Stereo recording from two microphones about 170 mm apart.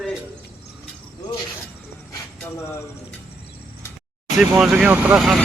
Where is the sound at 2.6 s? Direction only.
15° left (ahead or behind).